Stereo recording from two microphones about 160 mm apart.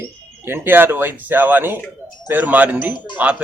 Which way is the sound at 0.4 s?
15° right (ahead or behind).